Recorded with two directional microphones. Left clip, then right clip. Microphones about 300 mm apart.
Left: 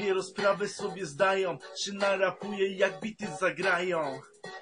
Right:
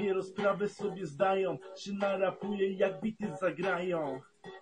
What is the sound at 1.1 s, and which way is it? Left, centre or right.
Speech, centre.